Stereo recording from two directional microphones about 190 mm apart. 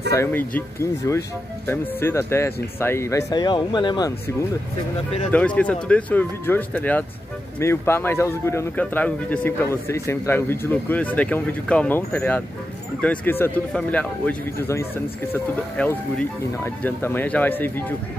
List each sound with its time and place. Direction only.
0.1 s speech: 10° left (ahead or behind)
5.3 s speech: 5° left (ahead or behind)